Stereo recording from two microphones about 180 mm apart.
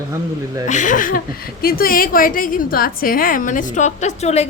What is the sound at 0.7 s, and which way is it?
A woman's voice, 45° left (ahead or behind).